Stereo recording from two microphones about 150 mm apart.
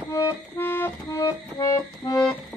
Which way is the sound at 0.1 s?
15° left (ahead or behind).